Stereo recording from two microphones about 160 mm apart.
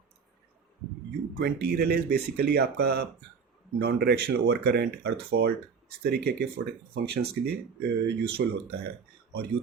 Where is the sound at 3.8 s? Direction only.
80° right.